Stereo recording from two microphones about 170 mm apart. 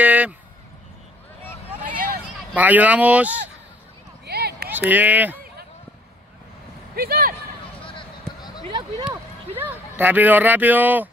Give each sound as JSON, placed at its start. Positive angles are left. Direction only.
{"t": 0.0, "sound": "a sound", "side_deg": -10}
{"t": 2.5, "sound": "speech", "side_deg": -10}
{"t": 4.3, "sound": "a sound", "side_deg": -70}
{"t": 4.6, "sound": "speech", "side_deg": -10}
{"t": 7.0, "sound": "speech", "side_deg": -60}
{"t": 9.5, "sound": "speech", "side_deg": -10}